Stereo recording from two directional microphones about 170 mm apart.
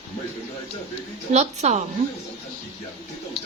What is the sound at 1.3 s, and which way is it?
Speech, 40° right (ahead or behind).